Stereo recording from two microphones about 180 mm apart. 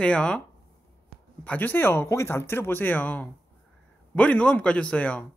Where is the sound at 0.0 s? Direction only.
5° left (ahead or behind).